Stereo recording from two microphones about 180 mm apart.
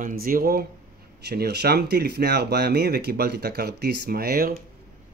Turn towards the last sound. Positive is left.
turn(degrees=-55)  # may be behind; listen again after turning